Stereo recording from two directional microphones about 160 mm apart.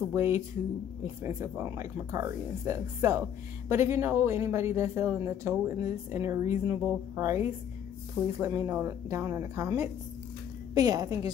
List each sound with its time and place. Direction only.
0.1 s a woman's voice: 15° right (ahead or behind)